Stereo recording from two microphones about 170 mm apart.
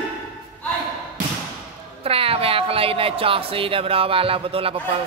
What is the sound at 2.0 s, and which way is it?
Speech, 35° right (ahead or behind).